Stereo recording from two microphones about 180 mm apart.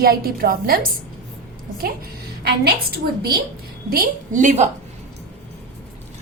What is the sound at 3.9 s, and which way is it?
Speech, 50° right (ahead or behind).